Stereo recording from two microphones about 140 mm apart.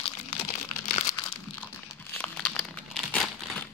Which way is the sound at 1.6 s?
10° left (ahead or behind).